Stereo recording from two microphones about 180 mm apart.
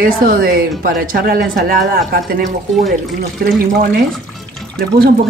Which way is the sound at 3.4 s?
55° right (ahead or behind).